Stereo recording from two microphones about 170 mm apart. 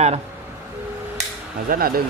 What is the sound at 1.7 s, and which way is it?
Speech, 60° right (ahead or behind).